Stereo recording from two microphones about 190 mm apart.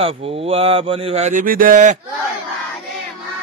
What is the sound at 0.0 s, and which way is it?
Speech, 30° right (ahead or behind).